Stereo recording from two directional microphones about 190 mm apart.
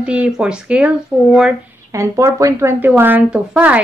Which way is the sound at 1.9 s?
15° right (ahead or behind).